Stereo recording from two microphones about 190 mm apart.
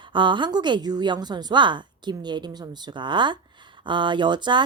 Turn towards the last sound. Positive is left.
turn(degrees=-25)  # may be behind; listen again after turning